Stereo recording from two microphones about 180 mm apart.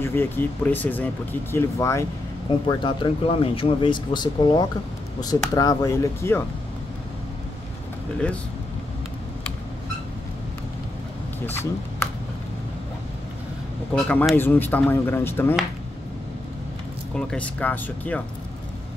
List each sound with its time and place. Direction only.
0.0 s speech: 10° left (ahead or behind)
2.7 s speech: 25° left (ahead or behind)
11.4 s speech: 15° left (ahead or behind)
13.9 s speech: 5° left (ahead or behind)
17.1 s speech: 5° left (ahead or behind)